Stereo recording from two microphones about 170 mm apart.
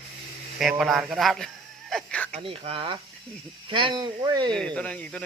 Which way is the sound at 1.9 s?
5° left (ahead or behind).